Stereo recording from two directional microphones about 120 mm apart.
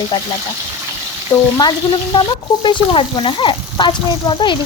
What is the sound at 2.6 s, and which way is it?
Speech, 45° left (ahead or behind).